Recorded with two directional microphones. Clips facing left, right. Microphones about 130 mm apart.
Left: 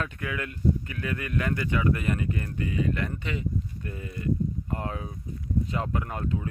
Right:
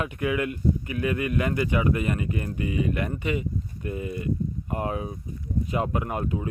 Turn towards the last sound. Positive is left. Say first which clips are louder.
# right 3 dB
turn(degrees=-15)  # may be behind; listen again after turning